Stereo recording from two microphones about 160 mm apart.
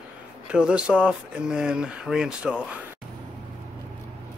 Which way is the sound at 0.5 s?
5° right (ahead or behind).